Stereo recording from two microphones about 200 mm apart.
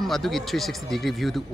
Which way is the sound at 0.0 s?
Centre (ahead or behind).